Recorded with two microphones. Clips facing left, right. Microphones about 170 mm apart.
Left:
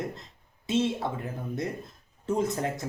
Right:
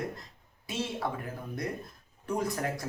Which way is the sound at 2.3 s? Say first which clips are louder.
Left 4 dB; 25° left (ahead or behind).